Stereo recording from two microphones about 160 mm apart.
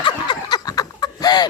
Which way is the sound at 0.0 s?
30° left (ahead or behind).